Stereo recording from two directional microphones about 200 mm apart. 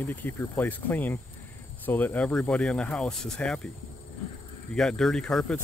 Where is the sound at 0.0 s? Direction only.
10° left (ahead or behind).